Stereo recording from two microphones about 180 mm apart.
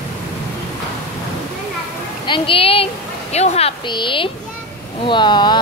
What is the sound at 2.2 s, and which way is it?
Speech, 30° left (ahead or behind).